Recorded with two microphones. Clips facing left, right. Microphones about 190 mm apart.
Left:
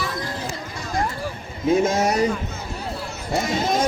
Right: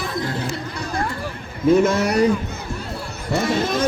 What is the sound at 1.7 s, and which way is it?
Speech, 60° right (ahead or behind).